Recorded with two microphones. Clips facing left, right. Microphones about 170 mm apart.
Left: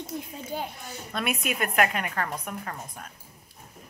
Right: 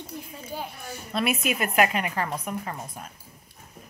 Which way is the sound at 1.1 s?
5° right (ahead or behind).